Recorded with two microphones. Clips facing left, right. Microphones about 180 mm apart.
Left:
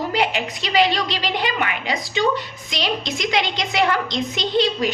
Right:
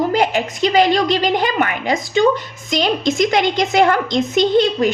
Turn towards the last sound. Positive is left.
turn(degrees=-50)  # may be behind; listen again after turning